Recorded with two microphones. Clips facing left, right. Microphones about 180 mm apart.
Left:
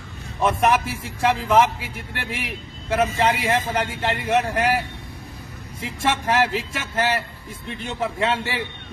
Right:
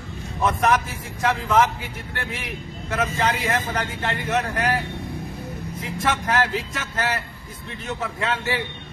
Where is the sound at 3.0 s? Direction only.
25° left (ahead or behind).